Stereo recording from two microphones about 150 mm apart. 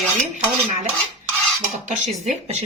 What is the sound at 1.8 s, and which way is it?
Speech, 50° right (ahead or behind).